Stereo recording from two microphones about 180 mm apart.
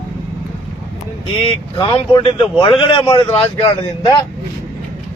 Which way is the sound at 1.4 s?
30° left (ahead or behind).